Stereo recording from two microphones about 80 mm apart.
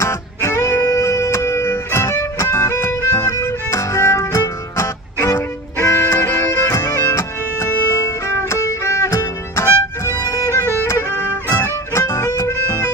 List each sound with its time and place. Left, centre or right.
0.0 s music: left